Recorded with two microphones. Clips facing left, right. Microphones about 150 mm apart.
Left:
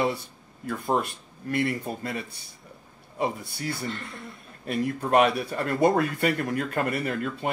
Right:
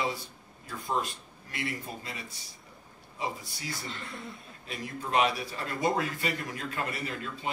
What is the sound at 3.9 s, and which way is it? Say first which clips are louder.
Speech: left 5 dB; centre (ahead or behind).